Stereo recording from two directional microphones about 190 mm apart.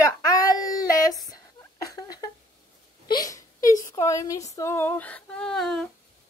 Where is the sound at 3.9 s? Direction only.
15° left (ahead or behind).